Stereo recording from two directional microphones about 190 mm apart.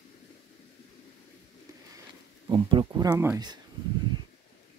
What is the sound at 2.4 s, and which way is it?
Speech, 25° right (ahead or behind).